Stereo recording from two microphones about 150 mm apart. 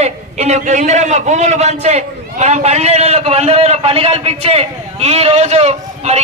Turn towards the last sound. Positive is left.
turn(degrees=-45)  # may be behind; listen again after turning